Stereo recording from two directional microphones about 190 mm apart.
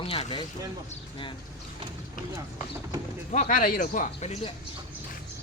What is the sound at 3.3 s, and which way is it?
Speech, 40° left (ahead or behind).